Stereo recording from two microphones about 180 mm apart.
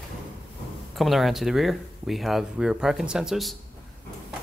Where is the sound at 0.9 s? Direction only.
Centre (ahead or behind).